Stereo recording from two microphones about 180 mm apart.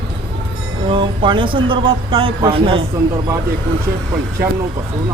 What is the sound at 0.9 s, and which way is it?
Speech, 25° right (ahead or behind).